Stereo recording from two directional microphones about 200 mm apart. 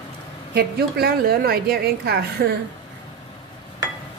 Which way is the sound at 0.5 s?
55° right (ahead or behind).